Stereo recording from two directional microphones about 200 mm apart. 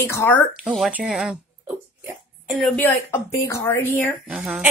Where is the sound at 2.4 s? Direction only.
Centre (ahead or behind).